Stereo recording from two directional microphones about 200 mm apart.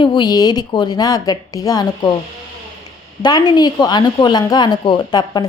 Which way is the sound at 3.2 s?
20° left (ahead or behind).